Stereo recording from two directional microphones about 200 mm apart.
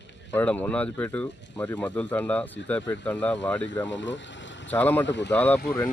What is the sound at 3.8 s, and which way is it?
Speech, 65° left (ahead or behind).